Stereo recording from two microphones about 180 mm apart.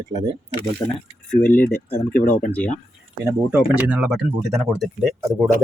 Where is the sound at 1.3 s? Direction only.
10° left (ahead or behind).